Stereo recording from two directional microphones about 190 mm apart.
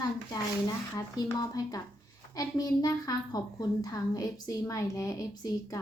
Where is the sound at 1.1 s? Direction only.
20° left (ahead or behind).